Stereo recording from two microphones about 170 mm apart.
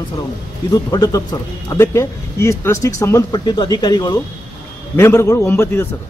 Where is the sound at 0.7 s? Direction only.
25° left (ahead or behind).